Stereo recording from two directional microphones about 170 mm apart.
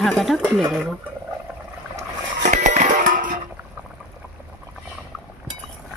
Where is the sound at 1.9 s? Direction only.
40° right (ahead or behind).